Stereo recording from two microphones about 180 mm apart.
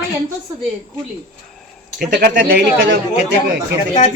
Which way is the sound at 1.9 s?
65° right (ahead or behind).